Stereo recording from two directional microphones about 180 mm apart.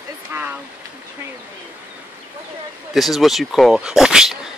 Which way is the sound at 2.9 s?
Centre (ahead or behind).